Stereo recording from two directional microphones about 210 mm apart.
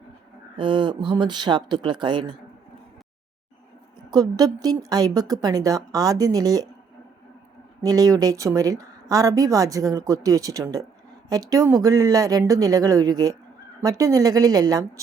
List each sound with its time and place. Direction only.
0.5 s speech: 25° right (ahead or behind)
4.1 s a woman's voice: 20° right (ahead or behind)
7.8 s a woman's voice: 15° right (ahead or behind)